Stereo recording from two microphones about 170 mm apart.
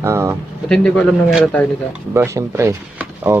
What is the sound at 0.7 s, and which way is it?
A man's voice, 10° left (ahead or behind).